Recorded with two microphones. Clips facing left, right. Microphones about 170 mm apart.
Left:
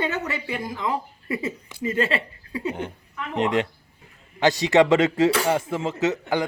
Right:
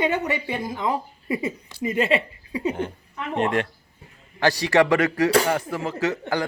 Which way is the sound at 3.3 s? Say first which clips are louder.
Even; 20° left (ahead or behind).